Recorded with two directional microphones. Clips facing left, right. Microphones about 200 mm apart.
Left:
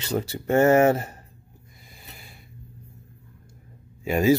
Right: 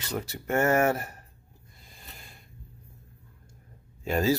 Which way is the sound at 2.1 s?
10° left (ahead or behind).